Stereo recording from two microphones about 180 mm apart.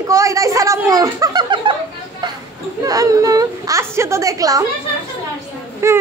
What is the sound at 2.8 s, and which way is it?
Whimper, 20° right (ahead or behind).